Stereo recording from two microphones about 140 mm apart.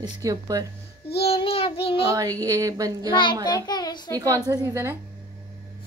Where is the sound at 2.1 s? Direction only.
25° right (ahead or behind).